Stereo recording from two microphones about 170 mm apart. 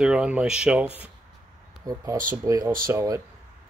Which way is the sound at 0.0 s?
5° right (ahead or behind).